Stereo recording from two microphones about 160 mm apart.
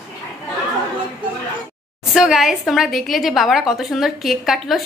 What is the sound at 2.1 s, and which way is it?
A woman's voice, centre (ahead or behind).